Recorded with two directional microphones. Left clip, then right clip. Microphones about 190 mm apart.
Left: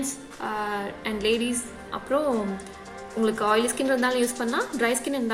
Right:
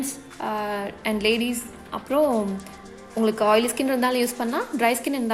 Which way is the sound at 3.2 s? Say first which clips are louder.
Right 3 dB; 35° right (ahead or behind).